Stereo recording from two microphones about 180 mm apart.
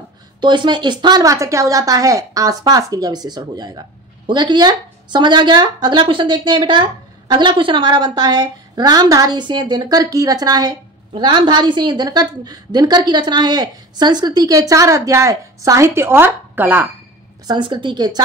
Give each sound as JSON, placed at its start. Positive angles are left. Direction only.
{"t": 0.4, "sound": "speech", "side_deg": -25}
{"t": 17.5, "sound": "speech", "side_deg": -25}